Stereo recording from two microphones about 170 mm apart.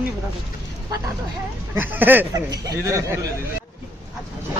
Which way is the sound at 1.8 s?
10° right (ahead or behind).